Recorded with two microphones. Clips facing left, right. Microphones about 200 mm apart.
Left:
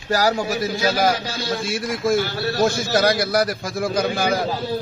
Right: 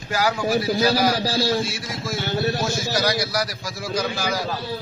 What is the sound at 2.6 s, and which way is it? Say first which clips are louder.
A man's voice: left 5 dB; 55° left (ahead or behind).